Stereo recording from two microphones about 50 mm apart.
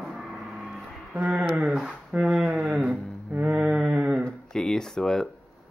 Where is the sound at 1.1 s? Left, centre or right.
Right.